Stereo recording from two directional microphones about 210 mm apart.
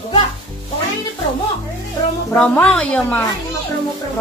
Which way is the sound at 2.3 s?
5° left (ahead or behind).